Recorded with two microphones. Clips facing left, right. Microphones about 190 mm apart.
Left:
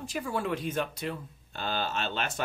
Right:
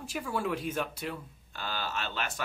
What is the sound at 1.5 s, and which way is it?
Speech, 25° left (ahead or behind).